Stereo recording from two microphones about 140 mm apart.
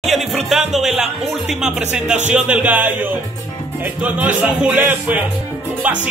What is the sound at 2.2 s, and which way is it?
Music, 10° right (ahead or behind).